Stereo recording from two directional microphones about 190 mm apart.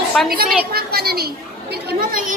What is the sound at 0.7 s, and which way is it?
A woman's voice, 55° right (ahead or behind).